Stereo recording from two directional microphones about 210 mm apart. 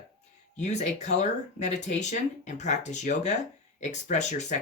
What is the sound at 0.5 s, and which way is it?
Speech, 35° left (ahead or behind).